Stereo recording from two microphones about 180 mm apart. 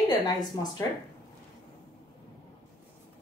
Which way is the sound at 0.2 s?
20° left (ahead or behind).